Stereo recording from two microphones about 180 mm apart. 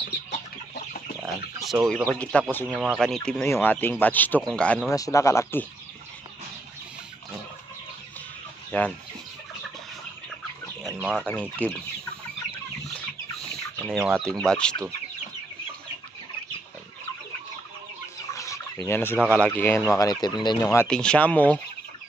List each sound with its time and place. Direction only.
1.6 s speech: centre (ahead or behind)
2.6 s speech: 5° right (ahead or behind)
3.0 s speech: 5° left (ahead or behind)
4.9 s speech: 20° left (ahead or behind)
8.7 s speech: 10° left (ahead or behind)
10.9 s chicken: 10° right (ahead or behind)
11.2 s speech: 10° left (ahead or behind)
13.7 s speech: centre (ahead or behind)
18.3 s fowl: 15° left (ahead or behind)
19.3 s speech: 10° left (ahead or behind)
20.9 s speech: 5° left (ahead or behind)